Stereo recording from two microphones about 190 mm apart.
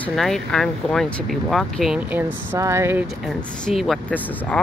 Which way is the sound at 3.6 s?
Centre (ahead or behind).